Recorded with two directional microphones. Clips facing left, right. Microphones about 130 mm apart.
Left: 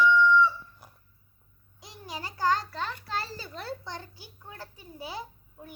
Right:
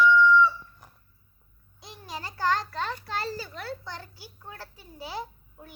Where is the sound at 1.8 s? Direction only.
15° left (ahead or behind).